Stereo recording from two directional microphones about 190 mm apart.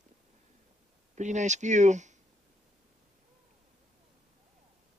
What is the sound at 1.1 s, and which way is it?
Speech, 40° right (ahead or behind).